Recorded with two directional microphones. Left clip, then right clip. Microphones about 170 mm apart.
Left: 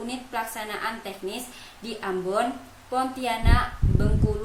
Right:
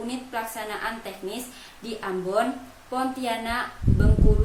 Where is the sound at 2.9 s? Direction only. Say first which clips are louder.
Left 1 dB; 5° left (ahead or behind).